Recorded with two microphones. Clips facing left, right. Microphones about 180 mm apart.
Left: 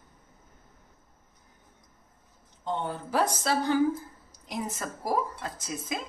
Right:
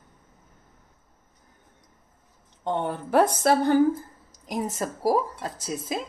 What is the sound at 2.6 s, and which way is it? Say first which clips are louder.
A woman's voice: right 5 dB; 65° right (ahead or behind).